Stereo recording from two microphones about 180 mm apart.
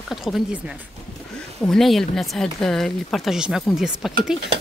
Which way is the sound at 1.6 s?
Centre (ahead or behind).